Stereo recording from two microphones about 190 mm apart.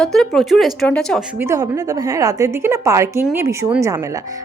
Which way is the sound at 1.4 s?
15° right (ahead or behind).